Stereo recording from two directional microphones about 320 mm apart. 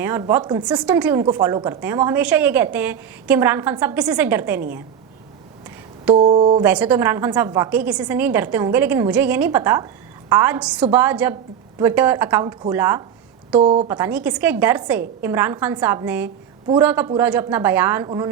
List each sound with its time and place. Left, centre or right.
0.0 s a woman's voice: centre
6.1 s a woman's voice: centre
6.7 s a woman's voice: centre